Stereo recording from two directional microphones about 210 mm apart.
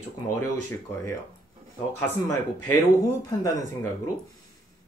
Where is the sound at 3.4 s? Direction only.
15° left (ahead or behind).